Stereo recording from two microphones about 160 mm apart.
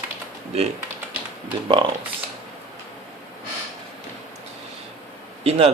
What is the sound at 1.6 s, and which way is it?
Speech, 30° right (ahead or behind).